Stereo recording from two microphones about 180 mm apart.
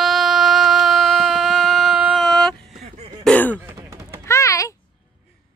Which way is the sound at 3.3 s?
10° left (ahead or behind).